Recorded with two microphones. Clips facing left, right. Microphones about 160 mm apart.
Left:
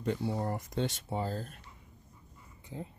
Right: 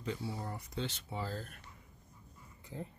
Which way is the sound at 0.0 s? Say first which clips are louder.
Left 7 dB; 60° left (ahead or behind).